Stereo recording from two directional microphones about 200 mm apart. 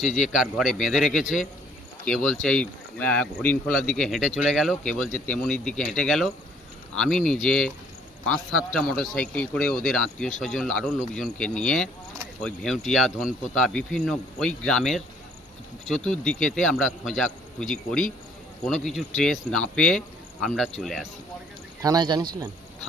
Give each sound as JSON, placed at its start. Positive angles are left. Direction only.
{"t": 0.2, "sound": "speech", "side_deg": 0}
{"t": 21.8, "sound": "speech", "side_deg": -20}